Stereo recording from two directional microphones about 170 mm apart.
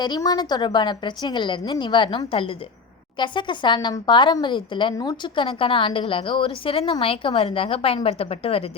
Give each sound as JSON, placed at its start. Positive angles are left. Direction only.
{"t": 0.0, "sound": "a woman's voice", "side_deg": 25}